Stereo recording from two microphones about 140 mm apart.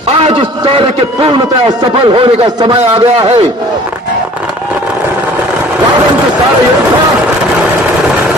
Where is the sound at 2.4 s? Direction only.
30° right (ahead or behind).